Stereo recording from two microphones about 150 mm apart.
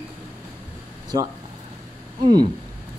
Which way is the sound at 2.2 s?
30° right (ahead or behind).